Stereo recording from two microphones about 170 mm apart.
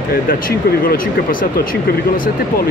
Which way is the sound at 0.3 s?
55° left (ahead or behind).